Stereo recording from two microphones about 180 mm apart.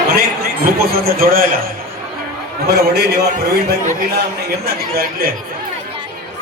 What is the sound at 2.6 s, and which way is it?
Speech, 65° right (ahead or behind).